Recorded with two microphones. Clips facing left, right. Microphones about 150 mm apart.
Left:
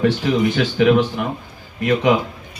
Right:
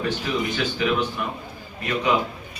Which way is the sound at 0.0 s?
75° left (ahead or behind).